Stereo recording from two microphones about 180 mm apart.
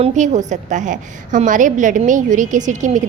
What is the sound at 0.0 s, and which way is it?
A woman's voice, 40° right (ahead or behind).